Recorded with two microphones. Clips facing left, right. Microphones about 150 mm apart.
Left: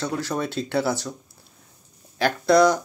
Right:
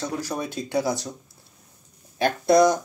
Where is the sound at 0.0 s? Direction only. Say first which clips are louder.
Left 2 dB; 10° right (ahead or behind).